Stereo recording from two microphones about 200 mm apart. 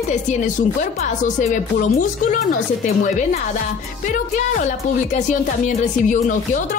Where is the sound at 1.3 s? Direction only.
40° left (ahead or behind).